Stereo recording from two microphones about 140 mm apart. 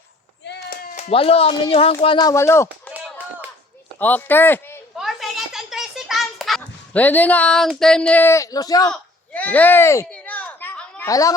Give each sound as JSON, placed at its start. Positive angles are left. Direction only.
{"t": 0.9, "sound": "speech", "side_deg": 45}
{"t": 2.1, "sound": "speech", "side_deg": 25}
{"t": 3.9, "sound": "speech", "side_deg": 15}
{"t": 4.9, "sound": "a sound", "side_deg": 0}
{"t": 6.9, "sound": "speech", "side_deg": 10}
{"t": 8.9, "sound": "speech", "side_deg": 10}
{"t": 10.1, "sound": "children playing", "side_deg": 10}
{"t": 11.1, "sound": "speech", "side_deg": 25}